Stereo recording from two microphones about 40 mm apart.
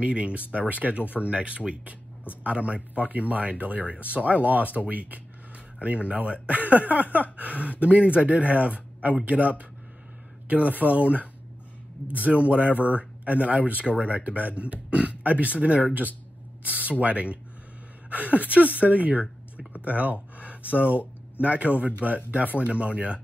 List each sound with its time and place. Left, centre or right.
0.0 s speech: right